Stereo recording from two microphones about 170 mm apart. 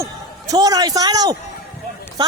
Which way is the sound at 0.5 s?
20° right (ahead or behind).